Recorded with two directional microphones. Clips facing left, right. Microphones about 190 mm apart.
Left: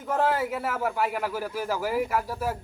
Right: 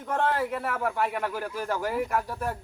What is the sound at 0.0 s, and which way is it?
A man's voice, 5° left (ahead or behind).